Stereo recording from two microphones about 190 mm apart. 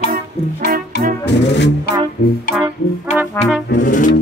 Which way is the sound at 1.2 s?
65° left (ahead or behind).